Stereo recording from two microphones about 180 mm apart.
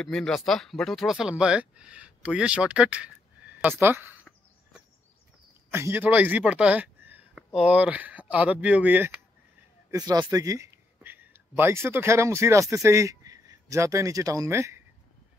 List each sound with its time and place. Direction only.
0.0 s speech: 5° left (ahead or behind)
5.7 s speech: 15° right (ahead or behind)
9.8 s speech: 20° right (ahead or behind)